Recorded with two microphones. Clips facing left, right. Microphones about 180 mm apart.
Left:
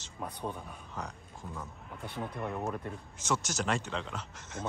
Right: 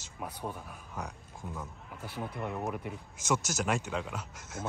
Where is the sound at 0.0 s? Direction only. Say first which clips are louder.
Left 1 dB; 10° right (ahead or behind).